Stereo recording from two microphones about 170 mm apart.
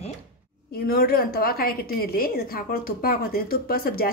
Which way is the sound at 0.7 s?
65° left (ahead or behind).